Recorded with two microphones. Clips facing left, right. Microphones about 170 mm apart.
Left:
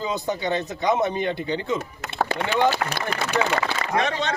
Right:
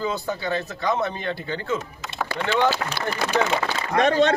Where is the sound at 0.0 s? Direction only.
20° left (ahead or behind).